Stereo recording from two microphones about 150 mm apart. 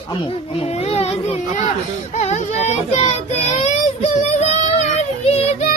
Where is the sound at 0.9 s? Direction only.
45° left (ahead or behind).